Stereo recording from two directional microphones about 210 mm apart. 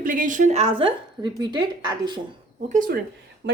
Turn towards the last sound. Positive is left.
turn(degrees=-55)  # may be behind; listen again after turning